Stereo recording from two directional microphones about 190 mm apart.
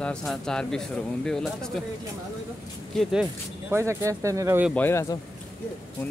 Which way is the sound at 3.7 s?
15° right (ahead or behind).